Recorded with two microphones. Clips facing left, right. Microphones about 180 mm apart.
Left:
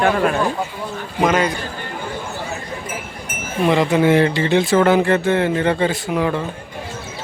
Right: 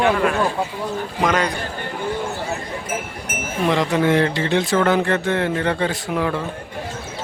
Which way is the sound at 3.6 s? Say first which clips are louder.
Left 3 dB; 5° left (ahead or behind).